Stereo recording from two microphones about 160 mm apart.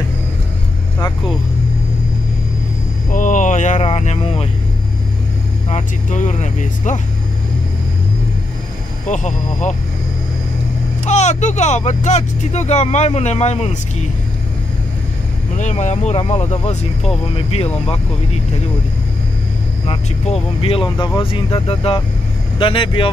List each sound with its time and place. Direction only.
3.1 s a sound: 55° left (ahead or behind); by 4.5 s 40° left (ahead or behind)
5.7 s speech: 50° left (ahead or behind)
9.0 s speech: 50° left (ahead or behind)
11.1 s speech: 45° left (ahead or behind)
15.6 s speech: 45° left (ahead or behind)
20.6 s speech: 35° left (ahead or behind)